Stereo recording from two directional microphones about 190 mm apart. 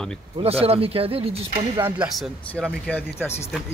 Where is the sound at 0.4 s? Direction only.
30° right (ahead or behind).